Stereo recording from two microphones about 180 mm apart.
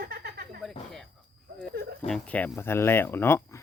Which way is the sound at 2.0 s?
5° left (ahead or behind).